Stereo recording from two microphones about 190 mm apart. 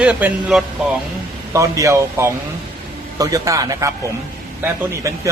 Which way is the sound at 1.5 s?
15° right (ahead or behind).